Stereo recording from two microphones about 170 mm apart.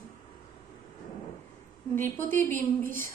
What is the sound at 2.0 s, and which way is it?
Speech, 10° left (ahead or behind).